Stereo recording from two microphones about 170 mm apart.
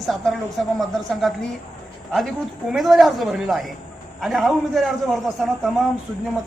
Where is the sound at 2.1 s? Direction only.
Centre (ahead or behind).